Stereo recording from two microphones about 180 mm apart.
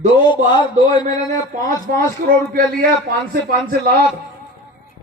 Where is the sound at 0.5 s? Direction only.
25° left (ahead or behind).